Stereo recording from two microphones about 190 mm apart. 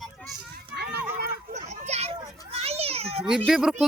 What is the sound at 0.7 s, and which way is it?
Children playing, 55° right (ahead or behind).